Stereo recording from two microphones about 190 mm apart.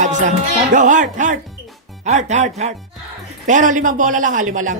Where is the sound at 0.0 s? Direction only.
40° right (ahead or behind).